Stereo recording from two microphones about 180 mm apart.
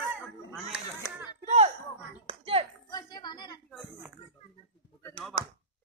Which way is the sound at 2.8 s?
20° left (ahead or behind).